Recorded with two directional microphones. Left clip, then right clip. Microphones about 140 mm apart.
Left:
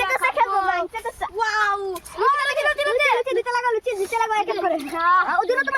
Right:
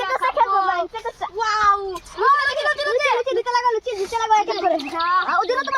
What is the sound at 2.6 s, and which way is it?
A child's voice, 15° left (ahead or behind).